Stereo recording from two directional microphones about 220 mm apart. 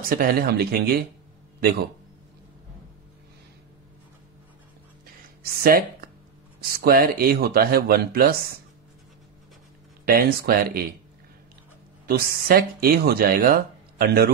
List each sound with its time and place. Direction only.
0.0 s speech: 40° right (ahead or behind)
5.4 s speech: 45° right (ahead or behind)
10.0 s speech: 45° right (ahead or behind)
12.1 s speech: 40° right (ahead or behind)